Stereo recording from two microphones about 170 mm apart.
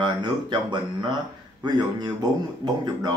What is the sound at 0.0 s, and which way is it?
Speech, 25° right (ahead or behind).